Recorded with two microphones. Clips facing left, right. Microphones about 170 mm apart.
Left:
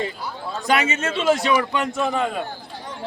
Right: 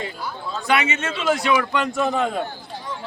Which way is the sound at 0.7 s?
40° left (ahead or behind).